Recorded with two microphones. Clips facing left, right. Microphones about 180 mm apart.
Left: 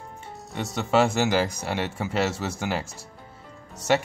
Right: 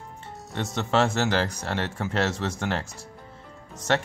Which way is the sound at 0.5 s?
5° left (ahead or behind).